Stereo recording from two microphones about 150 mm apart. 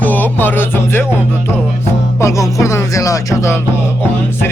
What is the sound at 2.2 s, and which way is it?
Speech, 20° left (ahead or behind).